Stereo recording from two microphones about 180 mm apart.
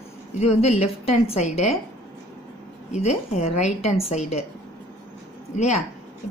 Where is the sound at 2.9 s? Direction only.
40° left (ahead or behind).